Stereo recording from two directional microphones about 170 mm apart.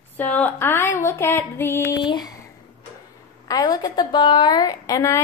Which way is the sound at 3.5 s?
25° left (ahead or behind).